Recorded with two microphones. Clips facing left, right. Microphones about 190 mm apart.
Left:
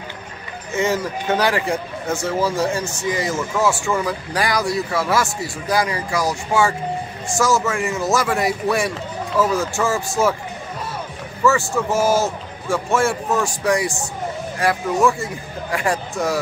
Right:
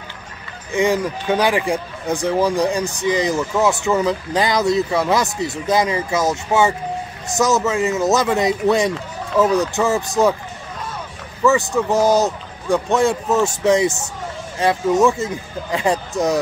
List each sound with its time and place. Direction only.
0.7 s speech: 15° right (ahead or behind)
11.4 s speech: 15° right (ahead or behind)